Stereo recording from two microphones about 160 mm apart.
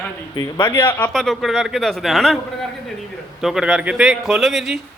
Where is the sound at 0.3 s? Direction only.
30° left (ahead or behind).